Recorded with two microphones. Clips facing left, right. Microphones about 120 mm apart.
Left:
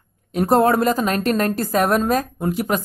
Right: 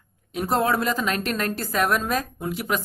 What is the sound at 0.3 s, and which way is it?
Speech, 45° left (ahead or behind).